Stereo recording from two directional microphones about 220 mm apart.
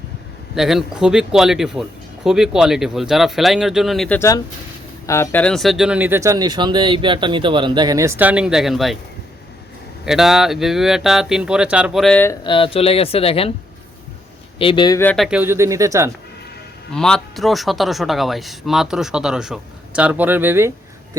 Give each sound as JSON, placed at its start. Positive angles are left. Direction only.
{"t": 0.5, "sound": "speech", "side_deg": 0}
{"t": 5.0, "sound": "speech", "side_deg": 10}
{"t": 10.1, "sound": "speech", "side_deg": 0}
{"t": 12.4, "sound": "speech", "side_deg": 25}
{"t": 14.6, "sound": "speech", "side_deg": 20}
{"t": 15.0, "sound": "speech", "side_deg": 0}
{"t": 16.9, "sound": "speech", "side_deg": 5}